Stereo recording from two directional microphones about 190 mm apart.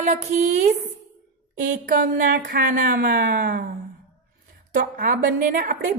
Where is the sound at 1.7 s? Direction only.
45° right (ahead or behind).